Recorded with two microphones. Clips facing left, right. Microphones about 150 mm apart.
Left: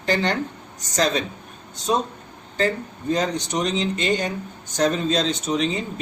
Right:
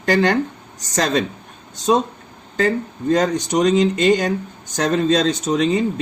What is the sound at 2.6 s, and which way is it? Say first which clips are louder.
Speech: right 4 dB; 90° right.